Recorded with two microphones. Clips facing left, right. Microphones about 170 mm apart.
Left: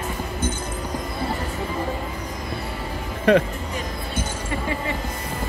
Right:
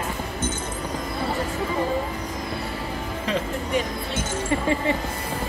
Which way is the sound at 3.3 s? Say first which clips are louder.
Left 10 dB; 60° left (ahead or behind).